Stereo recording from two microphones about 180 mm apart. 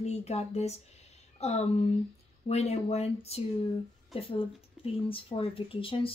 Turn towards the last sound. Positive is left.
turn(degrees=30)  # may be behind; listen again after turning